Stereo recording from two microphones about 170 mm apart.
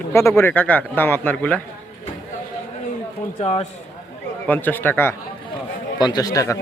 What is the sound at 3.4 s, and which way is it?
Speech, 40° left (ahead or behind).